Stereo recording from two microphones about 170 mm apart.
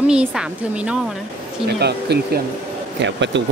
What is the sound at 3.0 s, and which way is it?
Speech, 90° right.